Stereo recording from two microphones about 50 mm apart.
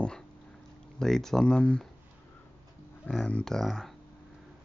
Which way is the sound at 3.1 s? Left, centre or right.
Centre.